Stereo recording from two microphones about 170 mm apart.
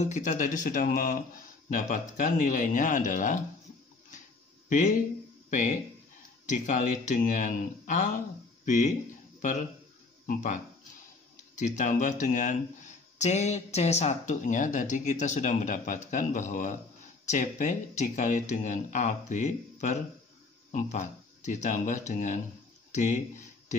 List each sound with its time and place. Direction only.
0.0 s speech: 45° left (ahead or behind)
4.6 s speech: 50° left (ahead or behind)
6.4 s speech: 45° left (ahead or behind)
10.2 s speech: 45° left (ahead or behind)